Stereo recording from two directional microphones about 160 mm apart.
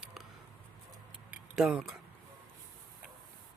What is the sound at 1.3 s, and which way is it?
Tick-tock, 5° right (ahead or behind).